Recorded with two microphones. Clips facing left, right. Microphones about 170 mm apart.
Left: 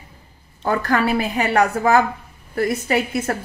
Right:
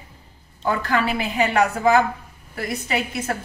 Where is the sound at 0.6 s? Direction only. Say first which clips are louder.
Left 3 dB; 45° left (ahead or behind).